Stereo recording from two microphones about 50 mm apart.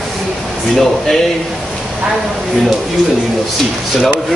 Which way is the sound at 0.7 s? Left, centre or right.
Centre.